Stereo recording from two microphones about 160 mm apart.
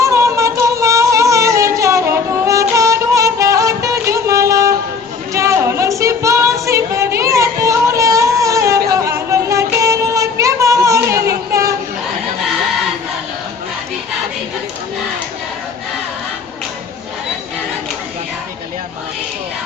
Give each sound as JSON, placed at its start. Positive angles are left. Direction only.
{"t": 0.0, "sound": "a sound", "side_deg": -20}
{"t": 5.3, "sound": "music", "side_deg": -20}
{"t": 11.3, "sound": "child singing", "side_deg": -20}